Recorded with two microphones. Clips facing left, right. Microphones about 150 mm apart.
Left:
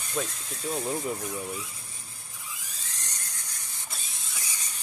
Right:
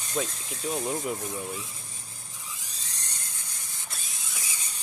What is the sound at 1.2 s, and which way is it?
Speech, 20° right (ahead or behind).